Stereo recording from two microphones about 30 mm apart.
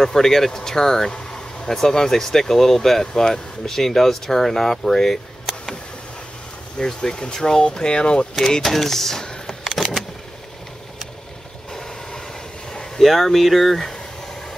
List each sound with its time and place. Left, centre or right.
0.0 s speech: centre
5.5 s a sound: centre
6.8 s speech: left
8.4 s speech: centre
8.6 s speech: centre
9.2 s a sound: left
9.8 s vehicle: centre
13.0 s speech: centre
13.7 s speech: centre